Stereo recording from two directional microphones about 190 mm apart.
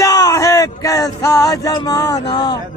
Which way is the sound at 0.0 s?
15° left (ahead or behind).